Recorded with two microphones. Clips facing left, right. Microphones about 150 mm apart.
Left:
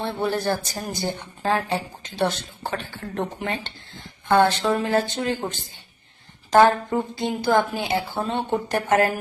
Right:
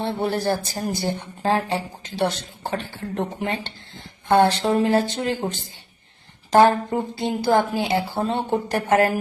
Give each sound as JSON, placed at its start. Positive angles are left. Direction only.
{"t": 0.0, "sound": "speech", "side_deg": -25}
{"t": 6.5, "sound": "speech", "side_deg": -25}